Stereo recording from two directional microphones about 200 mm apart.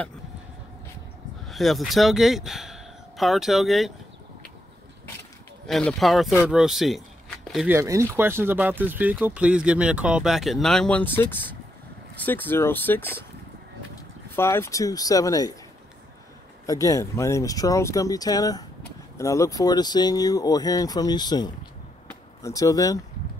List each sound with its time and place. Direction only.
1.5 s speech: centre (ahead or behind)
5.7 s speech: centre (ahead or behind)
14.3 s speech: 10° left (ahead or behind)
16.8 s speech: 15° left (ahead or behind)